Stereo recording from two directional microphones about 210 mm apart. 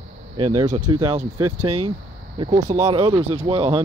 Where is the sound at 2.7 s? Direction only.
30° right (ahead or behind).